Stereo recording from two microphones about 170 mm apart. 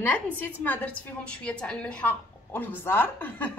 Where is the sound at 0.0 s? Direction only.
10° left (ahead or behind).